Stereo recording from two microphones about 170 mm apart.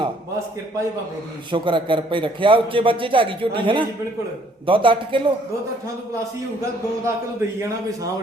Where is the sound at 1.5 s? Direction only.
30° right (ahead or behind).